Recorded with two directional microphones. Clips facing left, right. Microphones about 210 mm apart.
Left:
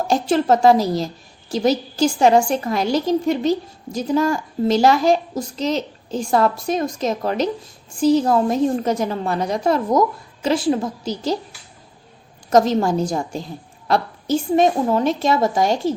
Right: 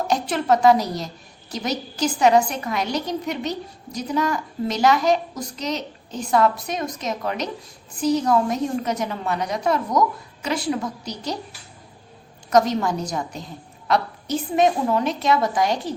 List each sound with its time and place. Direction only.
0.1 s a woman's voice: 30° left (ahead or behind)
12.5 s a woman's voice: 30° left (ahead or behind)